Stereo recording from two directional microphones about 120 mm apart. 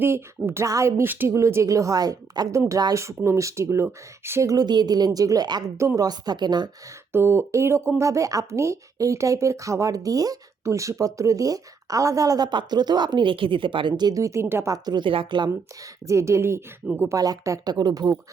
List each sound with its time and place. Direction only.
0.0 s a woman's voice: 20° right (ahead or behind); by 6.7 s 35° right (ahead or behind)
7.1 s speech: 20° right (ahead or behind)
14.8 s a woman's voice: 40° right (ahead or behind)
16.0 s speech: 25° right (ahead or behind)